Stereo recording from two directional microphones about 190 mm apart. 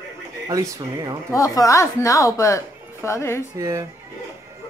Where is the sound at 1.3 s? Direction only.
15° left (ahead or behind).